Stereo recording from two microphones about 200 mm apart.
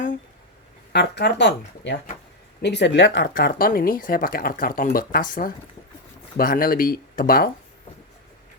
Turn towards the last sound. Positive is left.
turn(degrees=45)  # may be behind; listen again after turning